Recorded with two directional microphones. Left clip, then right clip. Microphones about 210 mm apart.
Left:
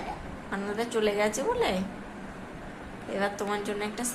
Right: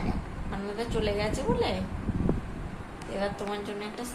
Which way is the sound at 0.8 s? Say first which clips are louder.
Left 3 dB; 25° left (ahead or behind).